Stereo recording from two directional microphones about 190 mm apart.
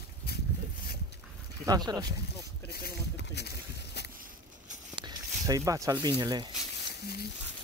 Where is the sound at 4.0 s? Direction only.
60° left (ahead or behind).